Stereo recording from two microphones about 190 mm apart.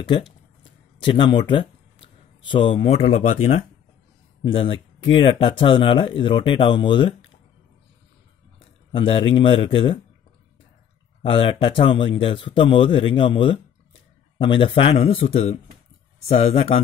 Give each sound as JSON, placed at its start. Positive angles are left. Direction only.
{"t": 0.0, "sound": "a man's voice", "side_deg": 25}
{"t": 8.5, "sound": "a sound", "side_deg": 30}
{"t": 9.3, "sound": "a man's voice", "side_deg": 25}
{"t": 11.2, "sound": "a man's voice", "side_deg": 25}